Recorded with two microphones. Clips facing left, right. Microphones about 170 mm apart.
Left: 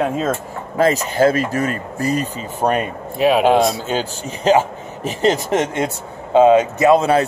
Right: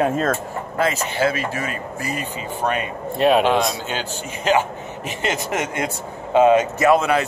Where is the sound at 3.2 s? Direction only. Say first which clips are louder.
Left 1 dB; centre (ahead or behind).